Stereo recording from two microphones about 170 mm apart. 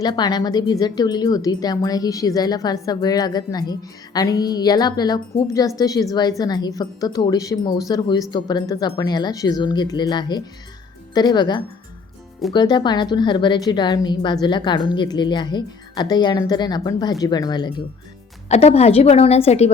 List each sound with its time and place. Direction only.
0.0 s a woman's voice: 25° left (ahead or behind)
18.4 s a woman's voice: 40° left (ahead or behind)